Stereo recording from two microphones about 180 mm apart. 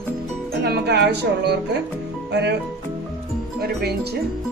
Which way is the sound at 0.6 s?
65° right (ahead or behind).